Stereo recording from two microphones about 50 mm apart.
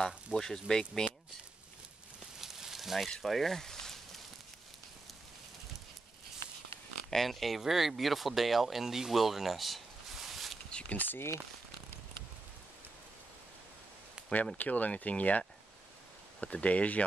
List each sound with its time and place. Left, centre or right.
0.0 s speech: centre
2.4 s a sound: centre
3.1 s speech: centre
7.1 s speech: centre
10.7 s a sound: left
11.0 s speech: left
14.6 s speech: left